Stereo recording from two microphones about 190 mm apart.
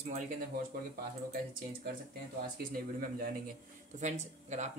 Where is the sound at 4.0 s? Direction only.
40° right (ahead or behind).